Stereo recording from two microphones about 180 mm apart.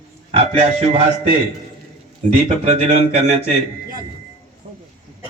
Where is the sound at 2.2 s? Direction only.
35° right (ahead or behind).